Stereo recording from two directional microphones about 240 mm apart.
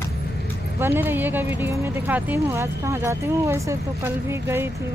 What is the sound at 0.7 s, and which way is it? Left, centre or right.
Speech, centre.